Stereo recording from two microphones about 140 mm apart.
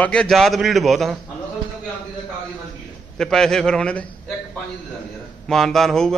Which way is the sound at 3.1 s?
5° left (ahead or behind).